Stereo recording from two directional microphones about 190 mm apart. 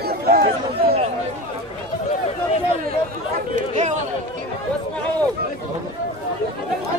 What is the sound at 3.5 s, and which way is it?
Speech, 40° right (ahead or behind).